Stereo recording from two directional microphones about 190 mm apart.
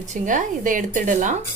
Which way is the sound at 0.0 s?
40° right (ahead or behind).